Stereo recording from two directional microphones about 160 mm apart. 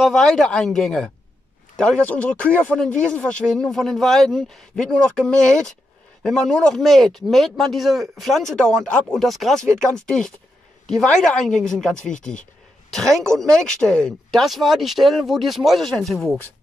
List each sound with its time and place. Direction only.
0.0 s speech: centre (ahead or behind)